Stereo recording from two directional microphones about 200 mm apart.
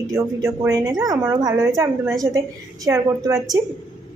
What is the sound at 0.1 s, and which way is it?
A woman's voice, 15° right (ahead or behind).